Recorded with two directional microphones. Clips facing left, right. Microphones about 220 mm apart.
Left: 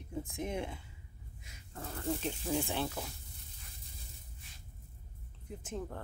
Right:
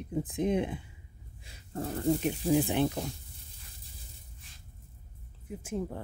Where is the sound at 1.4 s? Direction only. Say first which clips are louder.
Right 10 dB; 30° right (ahead or behind).